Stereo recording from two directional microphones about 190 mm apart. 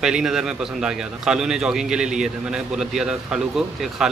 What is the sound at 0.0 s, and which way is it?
A man's voice, centre (ahead or behind).